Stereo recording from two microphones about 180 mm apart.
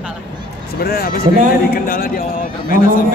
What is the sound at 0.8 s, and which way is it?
A man's voice, 60° left (ahead or behind).